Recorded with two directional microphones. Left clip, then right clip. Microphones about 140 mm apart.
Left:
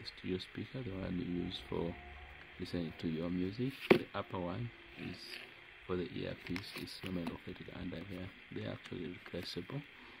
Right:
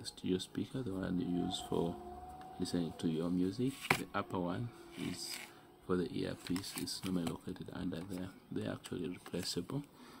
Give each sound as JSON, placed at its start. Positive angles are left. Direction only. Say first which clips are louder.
{"t": 0.0, "sound": "speech", "louder": "right 3 dB", "side_deg": 15}
{"t": 5.9, "sound": "speech", "louder": "right 3 dB", "side_deg": 10}